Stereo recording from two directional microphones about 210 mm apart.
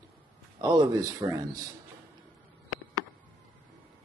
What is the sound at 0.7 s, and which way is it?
Speech, 20° right (ahead or behind).